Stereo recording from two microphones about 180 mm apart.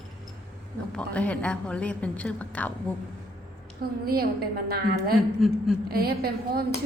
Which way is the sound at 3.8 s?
55° right (ahead or behind).